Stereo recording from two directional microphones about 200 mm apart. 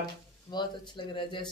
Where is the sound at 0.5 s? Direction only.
25° left (ahead or behind).